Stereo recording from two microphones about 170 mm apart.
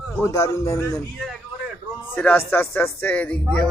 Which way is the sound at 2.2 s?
10° left (ahead or behind).